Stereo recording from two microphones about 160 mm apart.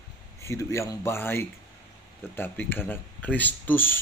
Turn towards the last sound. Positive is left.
turn(degrees=10)  # may be behind; listen again after turning